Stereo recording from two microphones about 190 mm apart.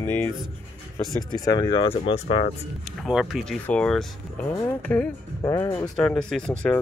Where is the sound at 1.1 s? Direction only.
20° left (ahead or behind).